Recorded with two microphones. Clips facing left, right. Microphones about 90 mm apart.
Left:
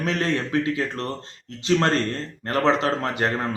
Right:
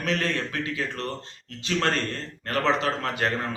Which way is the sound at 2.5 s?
30° left (ahead or behind).